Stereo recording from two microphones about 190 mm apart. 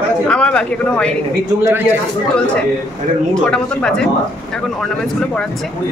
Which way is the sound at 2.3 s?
5° left (ahead or behind).